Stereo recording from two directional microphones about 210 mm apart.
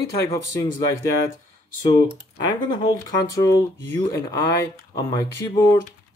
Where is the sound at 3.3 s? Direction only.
15° left (ahead or behind).